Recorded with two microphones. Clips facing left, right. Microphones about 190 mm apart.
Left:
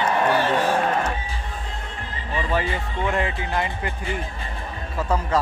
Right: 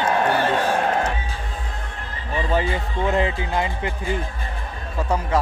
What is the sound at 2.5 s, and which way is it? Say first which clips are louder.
Speech: right 3 dB; 25° right (ahead or behind).